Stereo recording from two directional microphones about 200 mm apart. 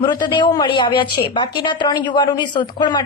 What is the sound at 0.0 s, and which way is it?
A woman's voice, 20° left (ahead or behind).